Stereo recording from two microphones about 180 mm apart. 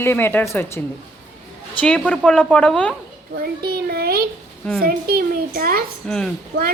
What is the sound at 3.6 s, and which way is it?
A child's voice, 60° right (ahead or behind).